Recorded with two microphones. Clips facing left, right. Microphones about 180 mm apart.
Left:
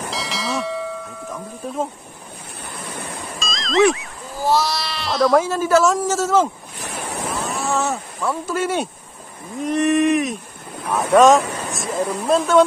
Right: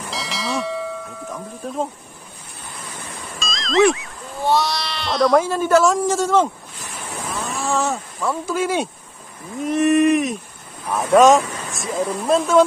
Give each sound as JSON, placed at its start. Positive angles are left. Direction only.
{"t": 0.1, "sound": "bell", "side_deg": 0}
{"t": 3.3, "sound": "speech", "side_deg": 0}
{"t": 6.8, "sound": "waves", "side_deg": 70}
{"t": 7.6, "sound": "speech", "side_deg": 0}
{"t": 10.8, "sound": "vehicle", "side_deg": 70}
{"t": 11.1, "sound": "speech", "side_deg": 0}